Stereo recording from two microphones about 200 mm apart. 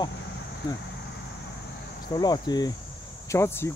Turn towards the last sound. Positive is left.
turn(degrees=15)  # may be behind; listen again after turning